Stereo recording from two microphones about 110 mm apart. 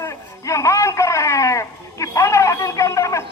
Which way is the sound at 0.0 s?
30° left (ahead or behind).